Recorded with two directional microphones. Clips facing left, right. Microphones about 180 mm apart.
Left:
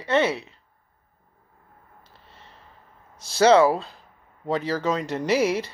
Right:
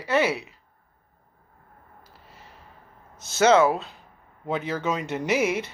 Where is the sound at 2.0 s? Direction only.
30° left (ahead or behind).